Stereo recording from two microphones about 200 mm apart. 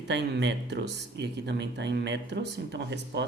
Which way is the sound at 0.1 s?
60° right (ahead or behind).